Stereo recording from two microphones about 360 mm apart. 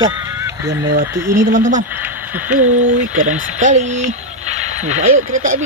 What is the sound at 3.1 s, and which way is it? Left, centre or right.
Speech, right.